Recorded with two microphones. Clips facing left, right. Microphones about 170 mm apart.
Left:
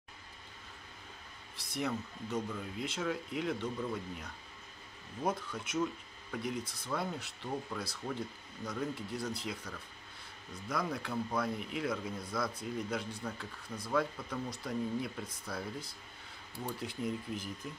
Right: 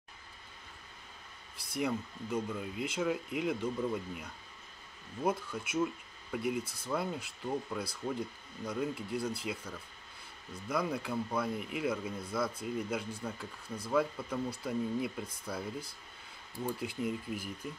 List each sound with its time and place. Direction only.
1.7 s speech: 10° right (ahead or behind)